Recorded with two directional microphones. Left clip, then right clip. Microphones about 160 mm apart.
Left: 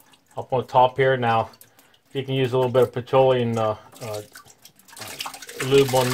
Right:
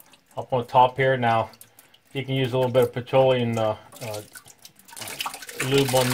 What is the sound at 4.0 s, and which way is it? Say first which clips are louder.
Speech: left 2 dB; 25° left (ahead or behind).